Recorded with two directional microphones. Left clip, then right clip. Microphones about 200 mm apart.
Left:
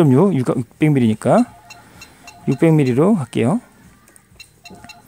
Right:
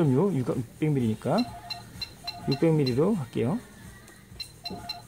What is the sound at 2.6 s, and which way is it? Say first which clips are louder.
Speech: left 10 dB; 45° left (ahead or behind).